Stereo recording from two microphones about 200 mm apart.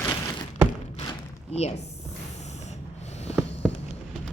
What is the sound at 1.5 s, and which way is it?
Speech, 30° left (ahead or behind).